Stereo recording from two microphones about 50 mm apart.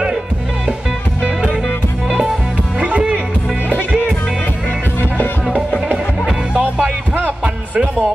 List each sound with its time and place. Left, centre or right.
1.2 s music: right
2.8 s music: right
6.5 s music: right